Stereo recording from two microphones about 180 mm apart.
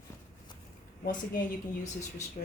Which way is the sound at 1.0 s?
50° left (ahead or behind).